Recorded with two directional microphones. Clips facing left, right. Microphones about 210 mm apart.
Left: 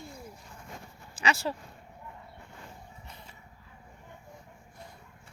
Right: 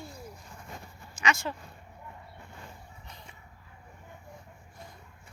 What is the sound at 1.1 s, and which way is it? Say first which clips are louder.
Speech: left 1 dB; 35° left (ahead or behind).